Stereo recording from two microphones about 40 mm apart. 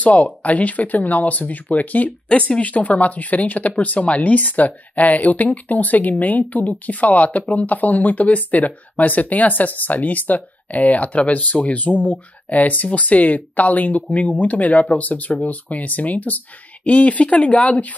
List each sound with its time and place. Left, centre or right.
0.0 s speech: left
2.2 s speech: left